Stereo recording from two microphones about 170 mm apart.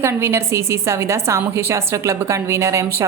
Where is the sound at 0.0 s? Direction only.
15° right (ahead or behind).